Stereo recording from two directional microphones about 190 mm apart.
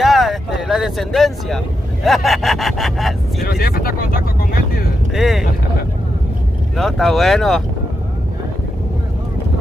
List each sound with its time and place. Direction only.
0.0 s vehicle: centre (ahead or behind)
2.0 s speech: centre (ahead or behind)
3.4 s speech: 50° left (ahead or behind)
5.1 s speech: centre (ahead or behind)
6.8 s speech: centre (ahead or behind)